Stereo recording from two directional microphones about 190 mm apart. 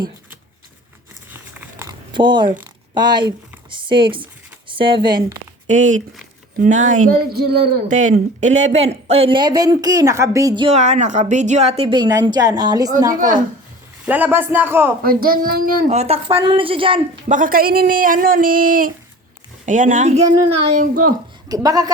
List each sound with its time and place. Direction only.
1.3 s biting: 10° right (ahead or behind)
1.9 s a sound: 25° right (ahead or behind)
2.9 s speech: 25° right (ahead or behind)
5.6 s a woman's voice: 40° right (ahead or behind); by 7.7 s 55° right (ahead or behind)
7.9 s speech: 40° right (ahead or behind); by 10.8 s 25° right (ahead or behind)
10.8 s a woman's voice: 35° right (ahead or behind); by 12.9 s 20° right (ahead or behind)
13.1 s speech: 45° right (ahead or behind)
14.0 s a man's voice: 10° right (ahead or behind)
15.0 s speech: 50° right (ahead or behind)
15.9 s speech: 35° right (ahead or behind)
17.2 s a woman's voice: 45° right (ahead or behind)
20.7 s speech: 45° right (ahead or behind)
21.5 s speech: 20° right (ahead or behind)